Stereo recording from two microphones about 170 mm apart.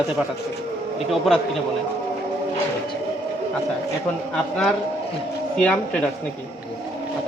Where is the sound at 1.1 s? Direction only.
Centre (ahead or behind).